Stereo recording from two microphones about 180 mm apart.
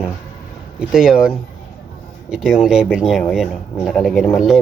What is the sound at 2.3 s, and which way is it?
Speech, centre (ahead or behind).